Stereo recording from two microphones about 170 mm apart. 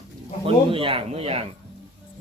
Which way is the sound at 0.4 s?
30° right (ahead or behind).